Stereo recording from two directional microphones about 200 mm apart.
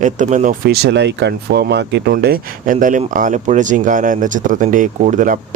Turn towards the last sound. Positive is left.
turn(degrees=-40)  # may be behind; listen again after turning